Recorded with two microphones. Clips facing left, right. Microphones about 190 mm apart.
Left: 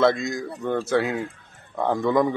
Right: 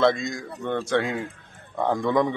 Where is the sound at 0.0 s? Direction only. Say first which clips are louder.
Left 1 dB; centre (ahead or behind).